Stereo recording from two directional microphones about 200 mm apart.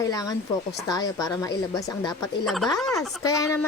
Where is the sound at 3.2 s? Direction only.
15° left (ahead or behind).